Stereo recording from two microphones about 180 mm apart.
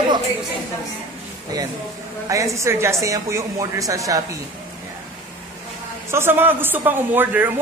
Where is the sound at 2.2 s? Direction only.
15° right (ahead or behind).